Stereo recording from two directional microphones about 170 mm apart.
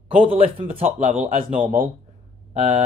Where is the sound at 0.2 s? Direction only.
35° right (ahead or behind).